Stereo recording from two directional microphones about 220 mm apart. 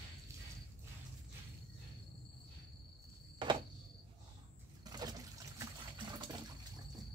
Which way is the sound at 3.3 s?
20° right (ahead or behind).